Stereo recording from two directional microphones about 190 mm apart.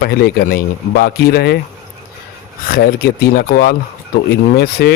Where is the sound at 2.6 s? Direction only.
50° left (ahead or behind).